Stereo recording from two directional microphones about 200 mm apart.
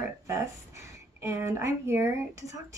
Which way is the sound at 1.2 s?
15° right (ahead or behind).